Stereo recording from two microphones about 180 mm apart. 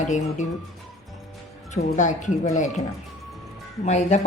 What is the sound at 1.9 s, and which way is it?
Speech, 40° left (ahead or behind).